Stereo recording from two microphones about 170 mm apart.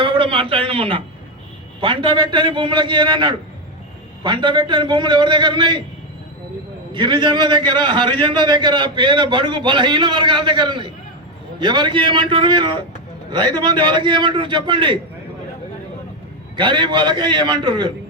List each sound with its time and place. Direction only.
0.0 s a man's voice: 30° right (ahead or behind)
6.9 s a man's voice: 25° right (ahead or behind)
16.6 s a man's voice: 30° right (ahead or behind)